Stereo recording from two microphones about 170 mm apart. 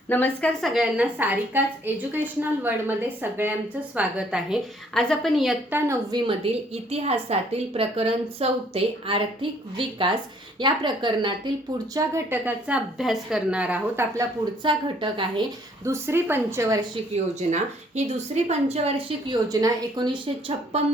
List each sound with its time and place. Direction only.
0.1 s a woman's voice: 10° left (ahead or behind)
0.7 s a woman's voice: 5° right (ahead or behind)
5.7 s a woman's voice: 20° right (ahead or behind)
6.9 s a woman's voice: 40° right (ahead or behind)
11.9 s a woman's voice: 15° right (ahead or behind)
14.6 s a woman's voice: 30° right (ahead or behind)
15.8 s a woman's voice: 15° right (ahead or behind)
17.5 s a woman's voice: 40° right (ahead or behind)
20.7 s a woman's voice: 35° right (ahead or behind)